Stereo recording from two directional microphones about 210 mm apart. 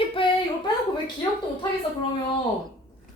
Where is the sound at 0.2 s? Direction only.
25° left (ahead or behind).